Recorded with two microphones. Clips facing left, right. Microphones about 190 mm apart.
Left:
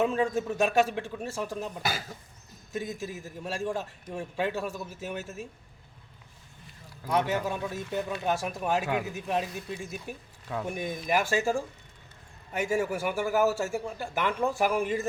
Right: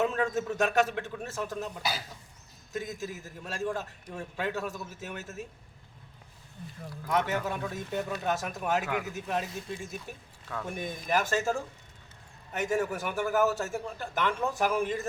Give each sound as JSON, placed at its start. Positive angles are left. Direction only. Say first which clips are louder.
{"t": 0.0, "sound": "a man's voice", "louder": "left 2 dB", "side_deg": 10}
{"t": 1.8, "sound": "speech", "louder": "left 2 dB", "side_deg": 50}
{"t": 3.0, "sound": "a man's voice", "louder": "left 2 dB", "side_deg": 15}
{"t": 7.1, "sound": "a man's voice", "louder": "left 2 dB", "side_deg": 15}